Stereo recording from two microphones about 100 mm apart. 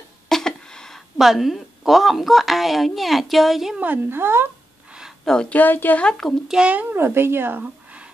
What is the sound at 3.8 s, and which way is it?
Speech, 20° right (ahead or behind).